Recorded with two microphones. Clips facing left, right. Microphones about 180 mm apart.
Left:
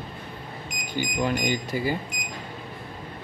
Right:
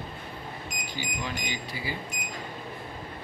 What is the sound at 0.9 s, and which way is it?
Speech, 50° left (ahead or behind).